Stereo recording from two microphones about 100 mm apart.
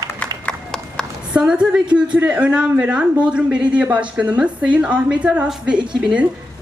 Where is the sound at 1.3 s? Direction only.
10° right (ahead or behind).